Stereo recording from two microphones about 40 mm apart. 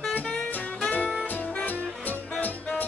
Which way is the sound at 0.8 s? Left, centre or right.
Left.